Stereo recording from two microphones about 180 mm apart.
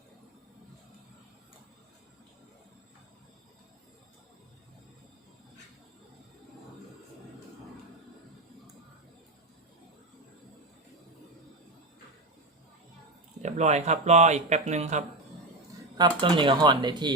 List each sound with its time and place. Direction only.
13.4 s speech: 40° right (ahead or behind)
16.0 s speech: 25° right (ahead or behind)